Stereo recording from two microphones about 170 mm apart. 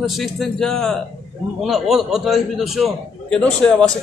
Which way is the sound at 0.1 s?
Centre (ahead or behind).